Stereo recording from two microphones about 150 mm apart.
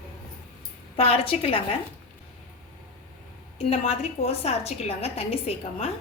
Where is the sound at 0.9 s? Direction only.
40° left (ahead or behind).